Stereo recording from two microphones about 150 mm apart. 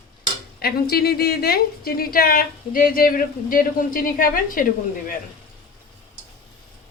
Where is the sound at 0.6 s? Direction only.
90° left; by 4.6 s 70° left (ahead or behind).